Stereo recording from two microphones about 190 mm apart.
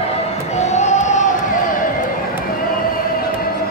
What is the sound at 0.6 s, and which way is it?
Music, 35° left (ahead or behind).